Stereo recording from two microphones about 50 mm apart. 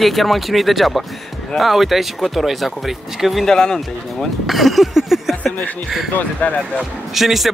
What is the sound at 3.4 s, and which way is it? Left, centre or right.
Speech, centre.